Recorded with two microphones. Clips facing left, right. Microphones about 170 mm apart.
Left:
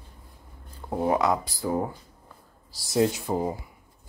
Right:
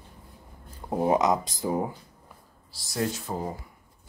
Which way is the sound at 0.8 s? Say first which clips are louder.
Right 1 dB; 20° right (ahead or behind).